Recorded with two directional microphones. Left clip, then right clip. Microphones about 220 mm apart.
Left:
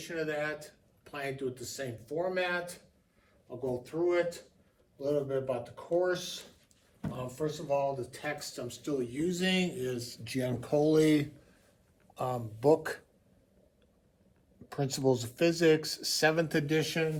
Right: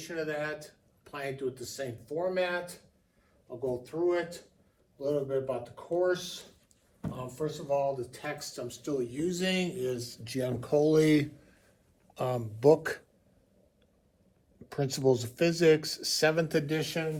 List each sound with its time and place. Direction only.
0.0 s speech: 10° right (ahead or behind)
3.8 s speech: 5° right (ahead or behind); by 13.0 s 30° right (ahead or behind)
14.7 s speech: 30° right (ahead or behind)